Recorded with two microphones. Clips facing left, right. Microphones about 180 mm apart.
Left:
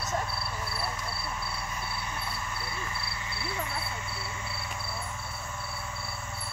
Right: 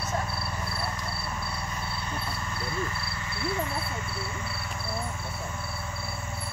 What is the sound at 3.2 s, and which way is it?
Insect, 15° left (ahead or behind).